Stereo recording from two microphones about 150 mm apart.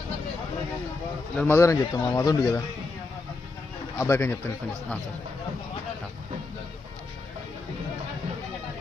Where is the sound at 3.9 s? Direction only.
20° left (ahead or behind).